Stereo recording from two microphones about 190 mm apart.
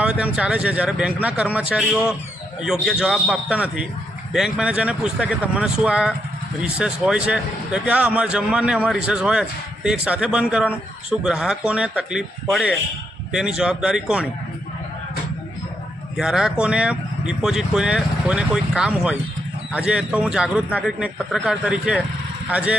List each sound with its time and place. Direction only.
0.0 s speech: 5° right (ahead or behind)
16.1 s speech: 5° right (ahead or behind)